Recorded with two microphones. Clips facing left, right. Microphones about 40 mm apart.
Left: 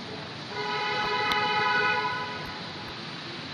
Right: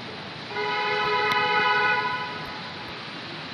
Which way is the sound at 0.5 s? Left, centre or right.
Right.